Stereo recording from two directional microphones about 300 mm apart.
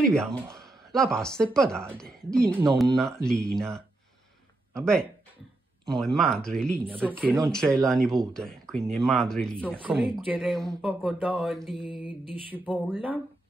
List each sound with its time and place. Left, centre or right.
0.1 s speech: centre
11.8 s mantra: centre
12.4 s speech: centre